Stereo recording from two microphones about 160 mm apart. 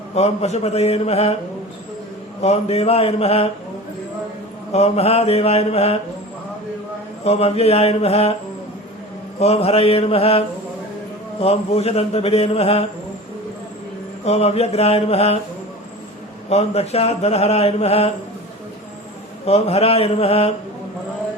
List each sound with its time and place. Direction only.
0.1 s mantra: 45° left (ahead or behind)
2.4 s mantra: 40° left (ahead or behind)
4.7 s mantra: 40° left (ahead or behind)
7.3 s mantra: 40° left (ahead or behind)
9.4 s mantra: 40° left (ahead or behind)
14.3 s mantra: 40° left (ahead or behind)
16.5 s mantra: 40° left (ahead or behind)
19.5 s mantra: 40° left (ahead or behind)